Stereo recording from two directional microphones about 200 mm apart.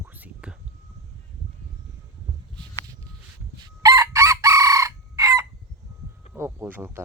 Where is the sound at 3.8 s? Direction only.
15° right (ahead or behind).